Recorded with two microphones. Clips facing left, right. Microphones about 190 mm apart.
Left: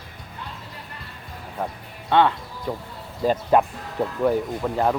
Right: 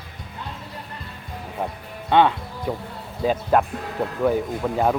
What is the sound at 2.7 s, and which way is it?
Speech, 10° right (ahead or behind).